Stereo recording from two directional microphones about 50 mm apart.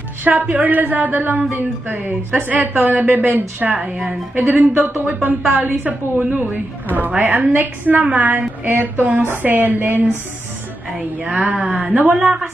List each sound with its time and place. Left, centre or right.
0.2 s a woman's voice: right
4.6 s a woman's voice: right
11.4 s speech: right
12.1 s a woman's voice: centre